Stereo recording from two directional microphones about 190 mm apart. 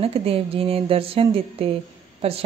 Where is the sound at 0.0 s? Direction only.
30° right (ahead or behind).